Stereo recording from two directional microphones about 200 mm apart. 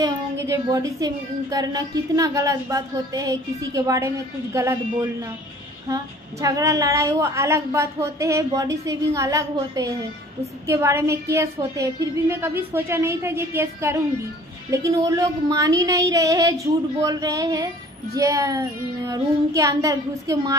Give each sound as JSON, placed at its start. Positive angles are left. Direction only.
{"t": 0.0, "sound": "a woman's voice", "side_deg": -15}
{"t": 6.4, "sound": "a woman's voice", "side_deg": -15}
{"t": 15.0, "sound": "a woman's voice", "side_deg": -15}